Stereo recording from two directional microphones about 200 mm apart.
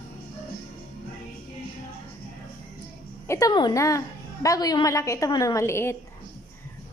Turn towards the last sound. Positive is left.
turn(degrees=10)  # may be behind; listen again after turning